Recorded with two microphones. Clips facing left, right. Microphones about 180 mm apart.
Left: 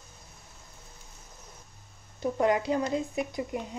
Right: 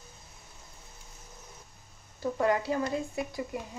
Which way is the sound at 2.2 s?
20° left (ahead or behind).